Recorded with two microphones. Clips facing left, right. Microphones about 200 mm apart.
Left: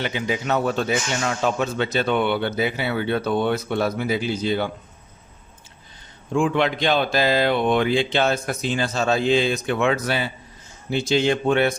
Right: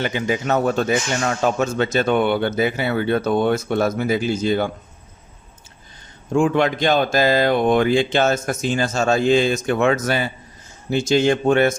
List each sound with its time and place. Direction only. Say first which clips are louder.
0.0 s speech: right 3 dB; 50° right (ahead or behind)
6.3 s speech: right 3 dB; 45° right (ahead or behind)